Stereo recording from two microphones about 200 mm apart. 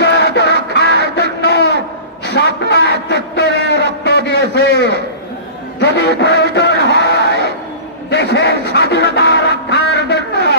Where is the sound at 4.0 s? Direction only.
55° left (ahead or behind).